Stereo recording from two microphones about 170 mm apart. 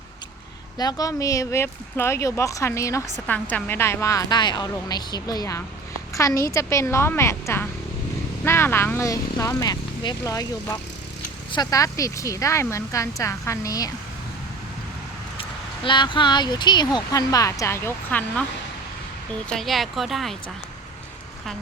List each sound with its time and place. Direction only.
0.8 s speech: 20° left (ahead or behind)
15.4 s speech: 30° left (ahead or behind); by 18.4 s 10° left (ahead or behind)
19.5 s speech: centre (ahead or behind)